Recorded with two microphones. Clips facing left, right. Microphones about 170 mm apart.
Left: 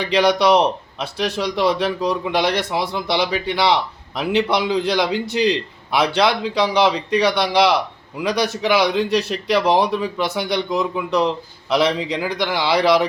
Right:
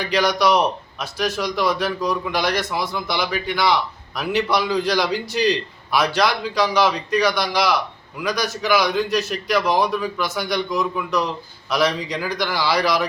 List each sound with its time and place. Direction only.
0.0 s speech: 25° left (ahead or behind)